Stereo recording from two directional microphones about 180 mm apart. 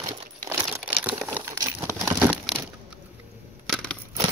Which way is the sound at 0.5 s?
15° right (ahead or behind).